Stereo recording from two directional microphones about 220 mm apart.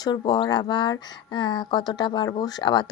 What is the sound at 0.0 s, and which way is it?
Speech, 20° left (ahead or behind).